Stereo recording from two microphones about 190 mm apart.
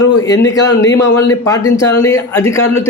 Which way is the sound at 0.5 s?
15° left (ahead or behind).